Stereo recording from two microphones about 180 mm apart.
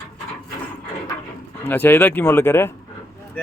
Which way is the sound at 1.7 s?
10° left (ahead or behind).